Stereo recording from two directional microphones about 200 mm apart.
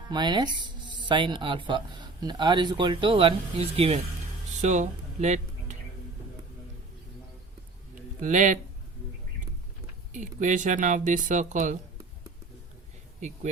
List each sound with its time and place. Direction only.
0.1 s speech: 20° right (ahead or behind); by 5.7 s 35° right (ahead or behind)
8.2 s speech: 40° right (ahead or behind)
10.1 s speech: 40° right (ahead or behind)
13.1 s speech: 35° right (ahead or behind)